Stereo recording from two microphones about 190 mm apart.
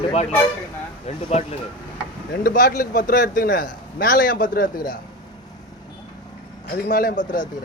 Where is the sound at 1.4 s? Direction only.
35° left (ahead or behind).